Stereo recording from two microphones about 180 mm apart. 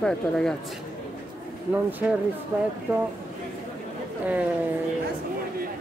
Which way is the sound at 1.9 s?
10° right (ahead or behind).